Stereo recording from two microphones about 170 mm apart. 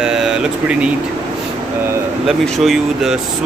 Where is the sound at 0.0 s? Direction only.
5° right (ahead or behind).